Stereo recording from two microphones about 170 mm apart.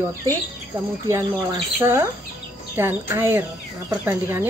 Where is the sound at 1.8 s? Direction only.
15° right (ahead or behind).